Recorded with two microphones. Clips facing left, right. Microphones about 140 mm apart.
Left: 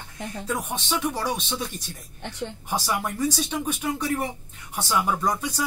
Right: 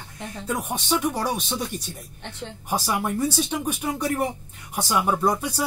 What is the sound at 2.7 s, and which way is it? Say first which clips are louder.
Speech: right 3 dB; 15° right (ahead or behind).